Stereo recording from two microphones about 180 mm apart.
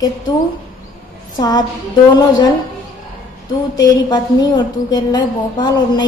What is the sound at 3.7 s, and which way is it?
A woman's voice, 20° left (ahead or behind).